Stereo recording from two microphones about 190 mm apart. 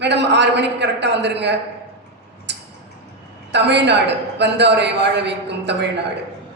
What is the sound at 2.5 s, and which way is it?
Tick-tock, 65° right (ahead or behind).